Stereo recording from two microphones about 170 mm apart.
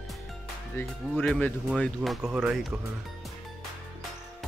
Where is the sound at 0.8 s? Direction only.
15° left (ahead or behind).